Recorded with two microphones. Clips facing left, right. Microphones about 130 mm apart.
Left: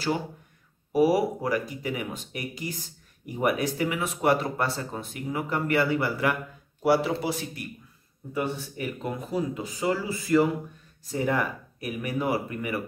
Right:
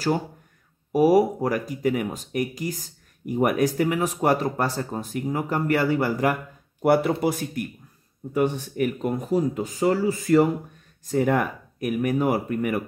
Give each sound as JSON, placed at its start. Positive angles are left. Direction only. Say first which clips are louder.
{"t": 0.9, "sound": "speech", "louder": "right 4 dB", "side_deg": -40}